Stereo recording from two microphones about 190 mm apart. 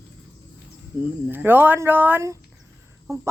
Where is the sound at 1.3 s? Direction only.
10° right (ahead or behind).